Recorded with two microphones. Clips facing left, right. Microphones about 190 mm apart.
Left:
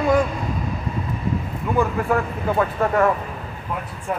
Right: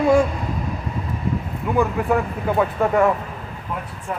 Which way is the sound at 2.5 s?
10° right (ahead or behind).